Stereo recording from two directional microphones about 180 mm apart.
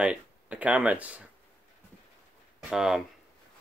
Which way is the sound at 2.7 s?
Centre (ahead or behind).